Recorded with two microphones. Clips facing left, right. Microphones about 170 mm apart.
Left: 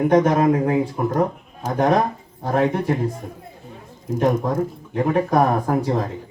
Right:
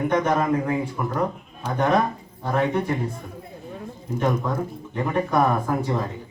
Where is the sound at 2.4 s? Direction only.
40° left (ahead or behind).